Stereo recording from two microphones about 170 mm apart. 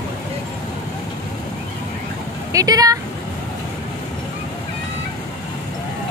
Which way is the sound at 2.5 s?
20° right (ahead or behind).